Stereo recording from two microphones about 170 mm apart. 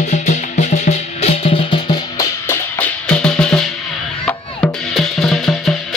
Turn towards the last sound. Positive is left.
turn(degrees=0)  # may be behind; listen again after turning